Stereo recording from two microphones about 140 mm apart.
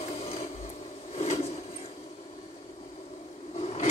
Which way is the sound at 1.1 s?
45° left (ahead or behind).